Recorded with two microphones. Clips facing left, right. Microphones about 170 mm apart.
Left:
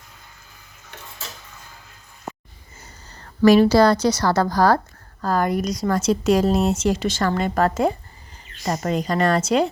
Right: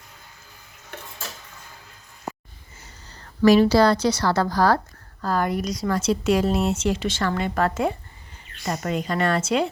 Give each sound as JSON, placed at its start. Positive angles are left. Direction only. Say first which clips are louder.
{"t": 3.4, "sound": "a woman's voice", "louder": "left 2 dB", "side_deg": 50}